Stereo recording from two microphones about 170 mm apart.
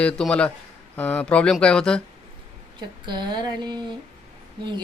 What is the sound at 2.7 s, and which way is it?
Speech, 25° right (ahead or behind).